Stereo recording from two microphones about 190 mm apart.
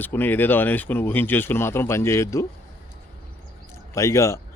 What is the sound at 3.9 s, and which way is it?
Speech, 15° left (ahead or behind).